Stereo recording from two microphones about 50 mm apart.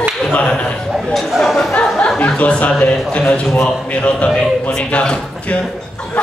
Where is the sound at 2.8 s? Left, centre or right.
Left.